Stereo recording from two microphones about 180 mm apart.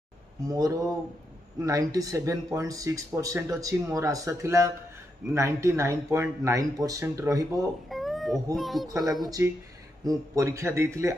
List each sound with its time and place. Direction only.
0.5 s speech: 20° right (ahead or behind)
7.9 s cat: centre (ahead or behind)
8.5 s a child's voice: centre (ahead or behind)
8.8 s speech: 20° right (ahead or behind)